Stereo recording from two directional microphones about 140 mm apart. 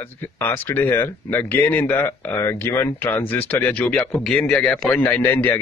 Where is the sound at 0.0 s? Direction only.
15° left (ahead or behind).